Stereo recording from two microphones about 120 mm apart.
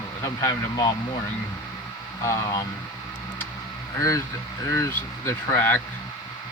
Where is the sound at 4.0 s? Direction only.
25° left (ahead or behind).